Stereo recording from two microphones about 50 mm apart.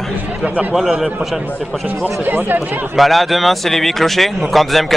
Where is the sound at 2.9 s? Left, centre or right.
Centre.